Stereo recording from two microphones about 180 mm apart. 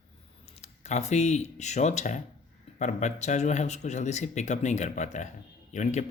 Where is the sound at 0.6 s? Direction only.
40° left (ahead or behind).